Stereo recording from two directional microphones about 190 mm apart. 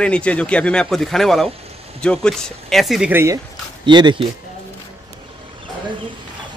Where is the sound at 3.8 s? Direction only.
25° right (ahead or behind).